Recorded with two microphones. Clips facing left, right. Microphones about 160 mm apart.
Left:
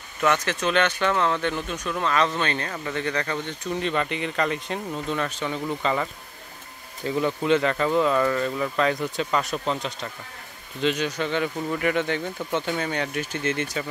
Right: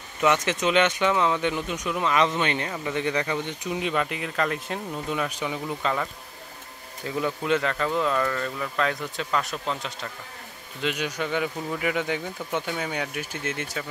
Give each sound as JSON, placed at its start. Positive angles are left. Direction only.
{"t": 0.2, "sound": "speech", "side_deg": -20}
{"t": 7.1, "sound": "speech", "side_deg": 0}